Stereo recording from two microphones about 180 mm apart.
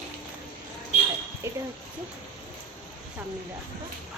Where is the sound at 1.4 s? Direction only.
15° right (ahead or behind).